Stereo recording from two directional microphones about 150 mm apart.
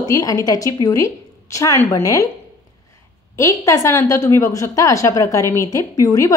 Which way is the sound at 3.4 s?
20° left (ahead or behind).